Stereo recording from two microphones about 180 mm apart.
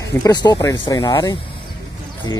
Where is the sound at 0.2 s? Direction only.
20° left (ahead or behind).